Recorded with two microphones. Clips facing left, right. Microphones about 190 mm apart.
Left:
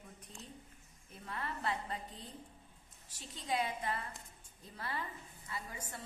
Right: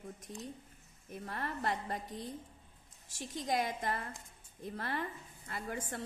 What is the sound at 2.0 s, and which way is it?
Speech, 80° right.